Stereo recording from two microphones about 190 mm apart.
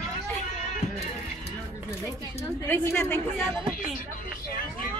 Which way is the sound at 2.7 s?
10° left (ahead or behind).